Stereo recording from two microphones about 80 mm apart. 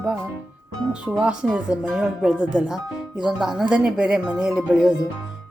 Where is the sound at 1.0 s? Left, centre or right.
Centre.